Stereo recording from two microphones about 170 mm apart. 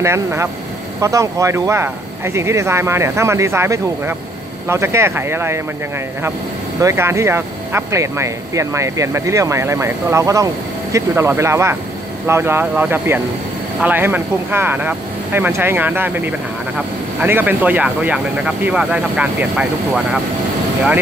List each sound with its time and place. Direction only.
0.0 s speech: 15° right (ahead or behind)
6.8 s speech: 15° right (ahead or behind)